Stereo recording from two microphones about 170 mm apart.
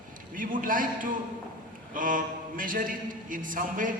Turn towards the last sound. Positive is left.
turn(degrees=-50)  # may be behind; listen again after turning